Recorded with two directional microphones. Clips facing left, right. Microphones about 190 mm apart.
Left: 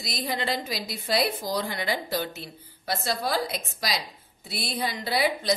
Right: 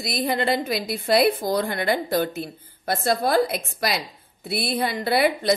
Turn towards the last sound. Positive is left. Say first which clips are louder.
# right 5 dB
turn(degrees=-60)  # may be behind; listen again after turning